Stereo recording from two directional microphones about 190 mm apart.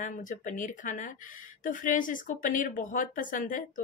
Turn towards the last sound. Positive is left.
turn(degrees=45)  # may be behind; listen again after turning